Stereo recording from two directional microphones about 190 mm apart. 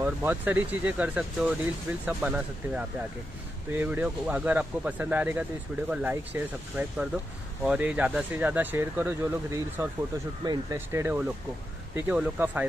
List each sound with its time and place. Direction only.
0.0 s speech: 10° right (ahead or behind)